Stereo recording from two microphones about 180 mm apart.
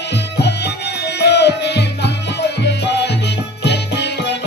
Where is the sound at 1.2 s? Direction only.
70° left (ahead or behind).